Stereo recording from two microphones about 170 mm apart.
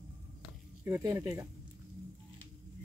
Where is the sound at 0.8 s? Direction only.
15° right (ahead or behind).